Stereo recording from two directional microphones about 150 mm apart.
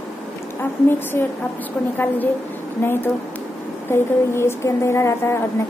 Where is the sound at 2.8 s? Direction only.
15° left (ahead or behind).